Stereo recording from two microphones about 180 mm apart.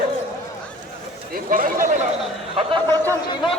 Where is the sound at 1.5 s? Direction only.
50° right (ahead or behind).